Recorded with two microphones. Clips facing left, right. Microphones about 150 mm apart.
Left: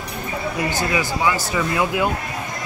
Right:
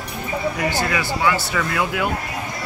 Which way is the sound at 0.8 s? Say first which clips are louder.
Even; 15° left (ahead or behind).